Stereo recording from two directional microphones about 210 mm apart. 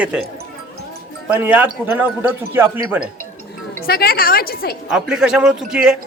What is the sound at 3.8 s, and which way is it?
Speech, 45° left (ahead or behind).